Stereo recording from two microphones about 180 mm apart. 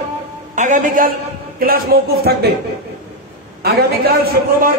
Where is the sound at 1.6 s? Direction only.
55° right (ahead or behind).